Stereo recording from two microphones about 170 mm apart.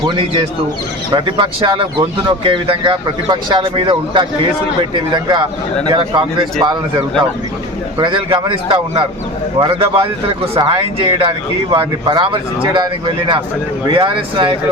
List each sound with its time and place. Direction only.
0.0 s a man's voice: 30° right (ahead or behind)